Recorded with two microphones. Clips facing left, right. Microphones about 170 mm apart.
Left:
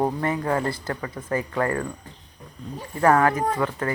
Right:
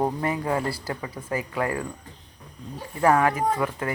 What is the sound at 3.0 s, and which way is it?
Speech, 10° right (ahead or behind).